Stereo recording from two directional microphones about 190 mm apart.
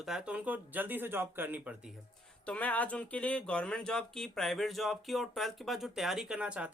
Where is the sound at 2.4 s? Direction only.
5° left (ahead or behind).